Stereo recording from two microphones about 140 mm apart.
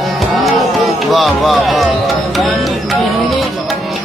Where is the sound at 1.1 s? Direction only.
Centre (ahead or behind).